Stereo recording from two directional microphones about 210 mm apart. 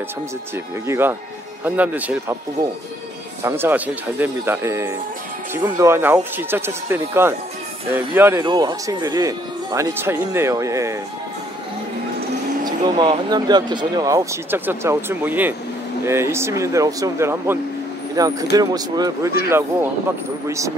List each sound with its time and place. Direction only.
0.8 s speech: 10° right (ahead or behind)
3.4 s speech: 10° right (ahead or behind)
12.6 s speech: 20° right (ahead or behind)